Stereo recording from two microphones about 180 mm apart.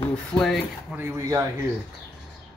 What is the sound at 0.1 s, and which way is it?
Speech, 5° left (ahead or behind).